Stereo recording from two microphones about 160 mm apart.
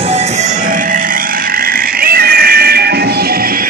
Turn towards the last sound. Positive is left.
turn(degrees=-80)